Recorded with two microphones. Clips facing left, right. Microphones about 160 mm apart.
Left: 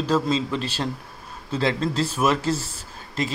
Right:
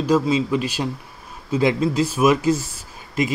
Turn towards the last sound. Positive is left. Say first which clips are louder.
# right 5 dB
turn(degrees=-15)  # may be behind; listen again after turning